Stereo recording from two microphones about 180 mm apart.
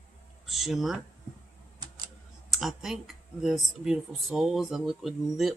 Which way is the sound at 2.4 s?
Centre (ahead or behind).